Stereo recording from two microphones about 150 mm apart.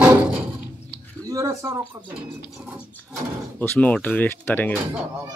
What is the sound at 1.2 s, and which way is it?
Speech, 25° right (ahead or behind).